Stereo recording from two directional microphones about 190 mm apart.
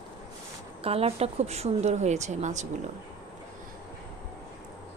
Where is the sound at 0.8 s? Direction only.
30° right (ahead or behind).